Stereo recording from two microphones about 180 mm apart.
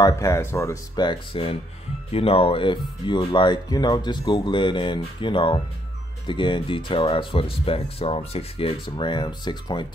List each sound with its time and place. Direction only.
0.0 s speech: 15° left (ahead or behind)